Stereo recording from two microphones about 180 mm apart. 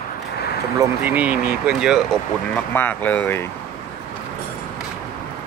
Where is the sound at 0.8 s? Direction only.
10° right (ahead or behind).